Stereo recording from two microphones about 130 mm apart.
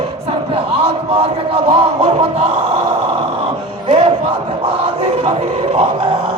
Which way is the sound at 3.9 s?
50° right (ahead or behind).